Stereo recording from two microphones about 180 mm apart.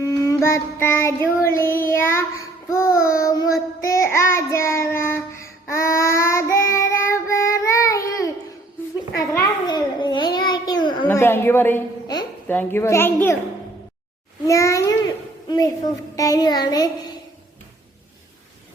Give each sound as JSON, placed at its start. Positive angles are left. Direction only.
{"t": 0.0, "sound": "music", "side_deg": 20}
{"t": 1.5, "sound": "child singing", "side_deg": 15}
{"t": 9.3, "sound": "a sound", "side_deg": 25}
{"t": 11.1, "sound": "a woman's voice", "side_deg": 15}
{"t": 12.5, "sound": "child singing", "side_deg": 10}
{"t": 14.4, "sound": "child singing", "side_deg": 15}
{"t": 15.4, "sound": "a woman's voice", "side_deg": 20}
{"t": 16.1, "sound": "child singing", "side_deg": 20}